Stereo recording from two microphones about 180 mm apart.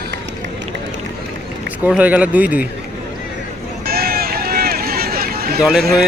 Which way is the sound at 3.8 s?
55° right (ahead or behind).